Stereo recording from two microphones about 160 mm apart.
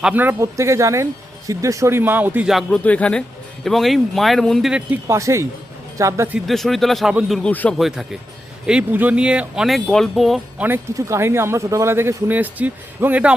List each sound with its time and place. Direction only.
0.0 s speech: 10° right (ahead or behind)
4.9 s speech: 20° right (ahead or behind)
6.5 s speech: centre (ahead or behind)
7.8 s speech: centre (ahead or behind)
10.7 s speech: 15° right (ahead or behind)